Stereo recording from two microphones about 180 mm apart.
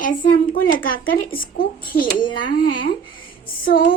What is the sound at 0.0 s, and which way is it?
Speech, 50° left (ahead or behind).